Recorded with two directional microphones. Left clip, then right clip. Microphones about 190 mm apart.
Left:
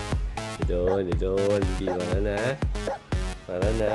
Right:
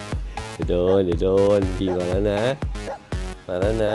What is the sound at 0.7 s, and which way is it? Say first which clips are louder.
Speech: right 7 dB; 35° right (ahead or behind).